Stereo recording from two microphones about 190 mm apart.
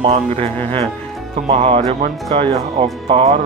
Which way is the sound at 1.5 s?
30° right (ahead or behind).